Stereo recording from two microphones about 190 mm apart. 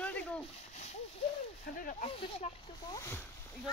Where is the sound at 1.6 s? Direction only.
50° left (ahead or behind).